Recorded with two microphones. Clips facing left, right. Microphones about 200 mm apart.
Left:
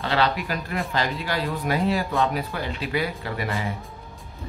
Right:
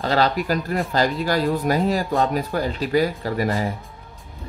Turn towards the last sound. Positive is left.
turn(degrees=-40)  # may be behind; listen again after turning